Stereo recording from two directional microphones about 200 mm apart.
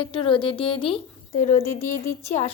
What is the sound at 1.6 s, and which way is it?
Speech, 15° left (ahead or behind).